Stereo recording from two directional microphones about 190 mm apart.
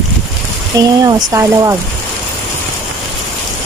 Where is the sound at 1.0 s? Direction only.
15° right (ahead or behind).